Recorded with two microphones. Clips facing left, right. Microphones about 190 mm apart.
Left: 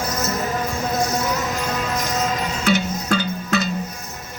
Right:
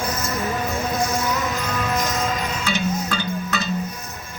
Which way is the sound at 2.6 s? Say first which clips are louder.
Left 5 dB; 45° left (ahead or behind).